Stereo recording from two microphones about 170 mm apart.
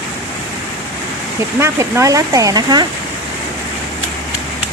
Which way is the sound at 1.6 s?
15° right (ahead or behind).